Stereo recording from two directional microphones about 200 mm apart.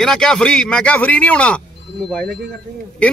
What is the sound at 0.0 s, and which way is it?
Speech, 5° left (ahead or behind).